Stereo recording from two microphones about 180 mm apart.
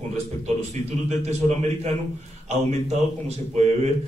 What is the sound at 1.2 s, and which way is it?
Speech, 40° right (ahead or behind).